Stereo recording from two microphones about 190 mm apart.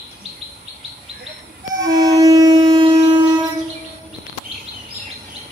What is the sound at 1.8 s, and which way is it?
Music, 20° right (ahead or behind).